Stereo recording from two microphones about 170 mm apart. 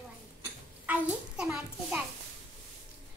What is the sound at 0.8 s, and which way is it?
Hands, 5° right (ahead or behind).